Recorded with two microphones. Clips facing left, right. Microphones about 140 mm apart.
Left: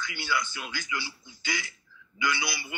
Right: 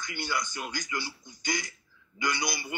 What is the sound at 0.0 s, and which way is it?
A man's voice, 45° right (ahead or behind).